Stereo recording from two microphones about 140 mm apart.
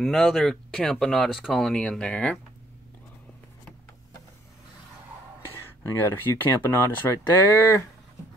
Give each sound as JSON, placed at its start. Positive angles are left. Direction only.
{"t": 0.0, "sound": "speech", "side_deg": 0}
{"t": 5.9, "sound": "speech", "side_deg": 15}